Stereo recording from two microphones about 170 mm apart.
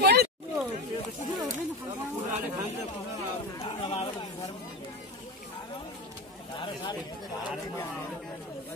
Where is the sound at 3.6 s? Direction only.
30° left (ahead or behind).